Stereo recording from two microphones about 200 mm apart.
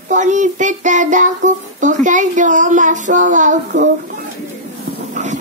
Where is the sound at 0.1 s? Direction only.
40° right (ahead or behind).